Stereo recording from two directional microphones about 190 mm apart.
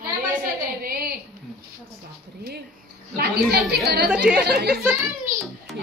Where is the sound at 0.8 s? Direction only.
55° right (ahead or behind).